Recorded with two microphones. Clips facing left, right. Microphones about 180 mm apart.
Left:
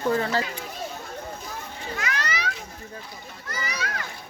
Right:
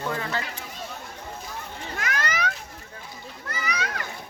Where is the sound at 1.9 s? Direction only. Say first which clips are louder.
Right 1 dB; 50° right (ahead or behind).